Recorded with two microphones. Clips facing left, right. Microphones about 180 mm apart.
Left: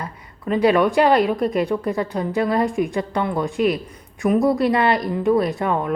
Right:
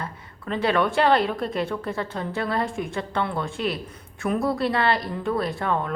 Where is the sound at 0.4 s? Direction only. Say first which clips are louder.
Left 6 dB; 10° left (ahead or behind).